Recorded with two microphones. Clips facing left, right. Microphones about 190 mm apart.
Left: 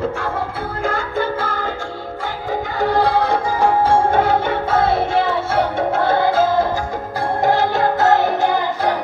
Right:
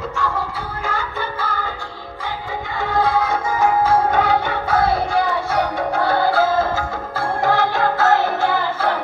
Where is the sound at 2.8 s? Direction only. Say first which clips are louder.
Left 2 dB; 35° left (ahead or behind).